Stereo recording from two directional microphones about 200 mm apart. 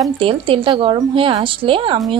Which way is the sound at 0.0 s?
25° right (ahead or behind).